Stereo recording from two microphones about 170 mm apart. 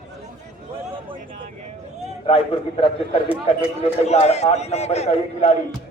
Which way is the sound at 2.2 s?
35° left (ahead or behind).